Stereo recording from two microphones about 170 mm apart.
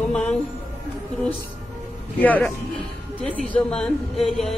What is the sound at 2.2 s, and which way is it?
Speech, 10° left (ahead or behind).